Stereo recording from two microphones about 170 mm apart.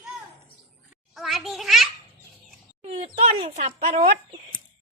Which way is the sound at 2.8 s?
35° right (ahead or behind).